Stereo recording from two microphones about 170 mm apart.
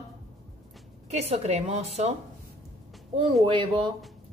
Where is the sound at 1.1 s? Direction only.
40° right (ahead or behind).